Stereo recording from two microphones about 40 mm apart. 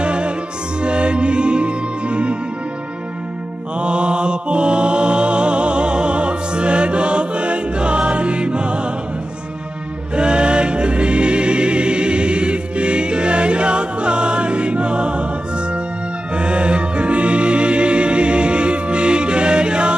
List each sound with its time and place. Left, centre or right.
0.0 s music: right
3.7 s mantra: right
10.1 s music: right